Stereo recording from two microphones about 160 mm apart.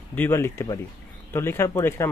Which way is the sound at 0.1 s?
15° left (ahead or behind).